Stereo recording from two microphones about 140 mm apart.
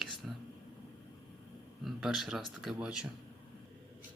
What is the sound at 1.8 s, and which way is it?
Speech, 5° right (ahead or behind).